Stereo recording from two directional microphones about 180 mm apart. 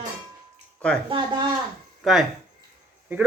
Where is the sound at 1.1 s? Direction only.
25° right (ahead or behind).